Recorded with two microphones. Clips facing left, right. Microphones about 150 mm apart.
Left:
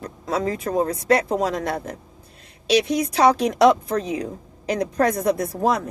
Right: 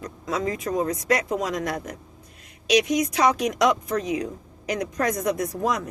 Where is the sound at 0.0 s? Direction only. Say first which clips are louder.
Left 3 dB; 30° left (ahead or behind).